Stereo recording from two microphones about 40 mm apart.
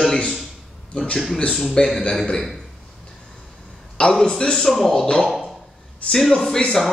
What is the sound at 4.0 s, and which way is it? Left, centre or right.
A man's voice, centre.